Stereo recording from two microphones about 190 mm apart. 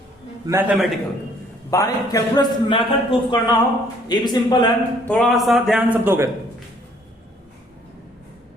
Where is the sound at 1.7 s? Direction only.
15° left (ahead or behind).